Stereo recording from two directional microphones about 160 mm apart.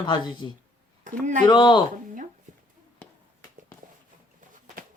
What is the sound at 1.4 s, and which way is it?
Speech, 30° left (ahead or behind).